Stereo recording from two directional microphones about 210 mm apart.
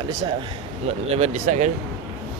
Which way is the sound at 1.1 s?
30° right (ahead or behind).